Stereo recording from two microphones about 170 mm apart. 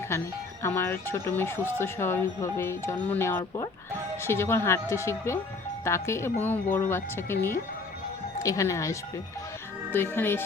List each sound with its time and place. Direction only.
0.6 s speech: 15° left (ahead or behind)